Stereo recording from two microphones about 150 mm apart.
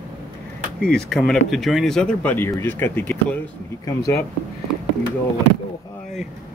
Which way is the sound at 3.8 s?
20° left (ahead or behind).